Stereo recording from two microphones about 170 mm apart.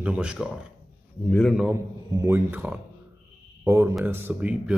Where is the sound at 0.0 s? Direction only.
5° right (ahead or behind).